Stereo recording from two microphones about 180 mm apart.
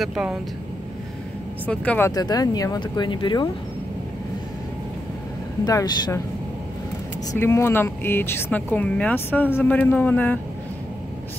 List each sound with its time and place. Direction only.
0.0 s speech: 5° right (ahead or behind)
1.7 s speech: 10° left (ahead or behind); by 3.4 s 25° left (ahead or behind)
5.7 s speech: 20° left (ahead or behind)
7.3 s speech: 15° left (ahead or behind)